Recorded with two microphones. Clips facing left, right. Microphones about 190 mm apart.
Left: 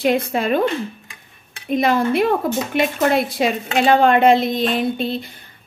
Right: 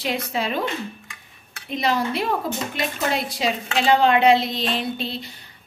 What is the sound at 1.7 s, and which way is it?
A woman's voice, 50° left (ahead or behind).